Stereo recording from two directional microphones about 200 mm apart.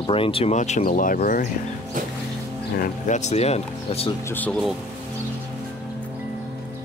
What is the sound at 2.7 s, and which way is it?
Speech, 35° left (ahead or behind).